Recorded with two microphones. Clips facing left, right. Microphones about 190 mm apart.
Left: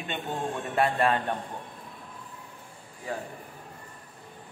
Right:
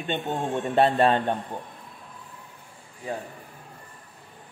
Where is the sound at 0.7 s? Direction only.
30° right (ahead or behind).